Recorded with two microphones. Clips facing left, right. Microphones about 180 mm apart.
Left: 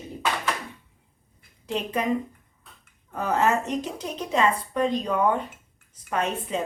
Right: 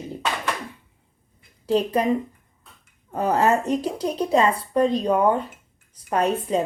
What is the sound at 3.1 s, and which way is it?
A woman's voice, 30° right (ahead or behind).